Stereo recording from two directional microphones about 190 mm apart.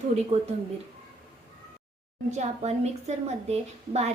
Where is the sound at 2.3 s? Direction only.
35° right (ahead or behind).